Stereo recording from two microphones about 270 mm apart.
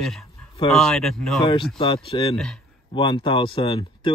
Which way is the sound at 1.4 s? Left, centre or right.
Centre.